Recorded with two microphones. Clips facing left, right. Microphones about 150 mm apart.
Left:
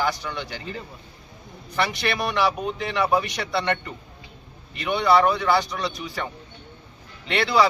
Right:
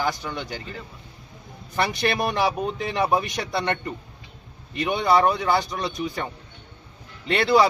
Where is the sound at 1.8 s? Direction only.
45° right (ahead or behind).